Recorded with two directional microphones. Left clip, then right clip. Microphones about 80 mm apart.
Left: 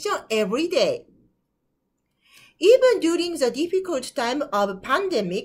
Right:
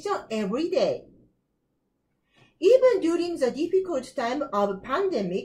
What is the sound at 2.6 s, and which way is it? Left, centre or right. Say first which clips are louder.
Speech: left 3 dB; centre.